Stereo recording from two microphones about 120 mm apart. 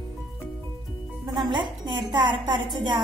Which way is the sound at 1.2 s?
35° right (ahead or behind).